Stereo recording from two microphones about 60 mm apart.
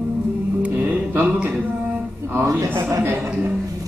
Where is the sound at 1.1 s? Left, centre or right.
Right.